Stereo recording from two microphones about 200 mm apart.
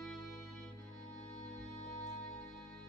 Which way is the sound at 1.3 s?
35° left (ahead or behind).